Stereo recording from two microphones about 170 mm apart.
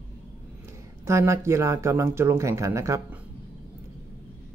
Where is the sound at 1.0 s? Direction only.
15° right (ahead or behind).